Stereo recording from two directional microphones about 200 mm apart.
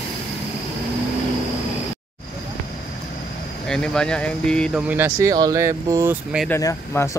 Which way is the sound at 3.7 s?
5° left (ahead or behind).